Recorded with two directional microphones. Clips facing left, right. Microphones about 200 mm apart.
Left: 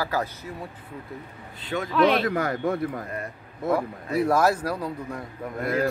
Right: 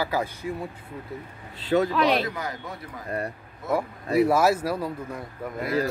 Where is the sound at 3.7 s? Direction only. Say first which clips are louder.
Right 7 dB; 10° right (ahead or behind).